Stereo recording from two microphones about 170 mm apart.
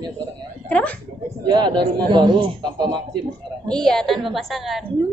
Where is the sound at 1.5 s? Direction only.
25° right (ahead or behind).